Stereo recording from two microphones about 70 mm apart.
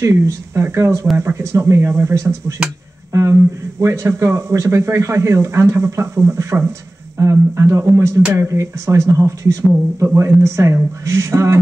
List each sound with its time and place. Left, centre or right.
0.6 s speech: right